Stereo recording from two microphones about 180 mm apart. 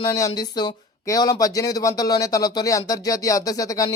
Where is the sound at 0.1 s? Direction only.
20° left (ahead or behind).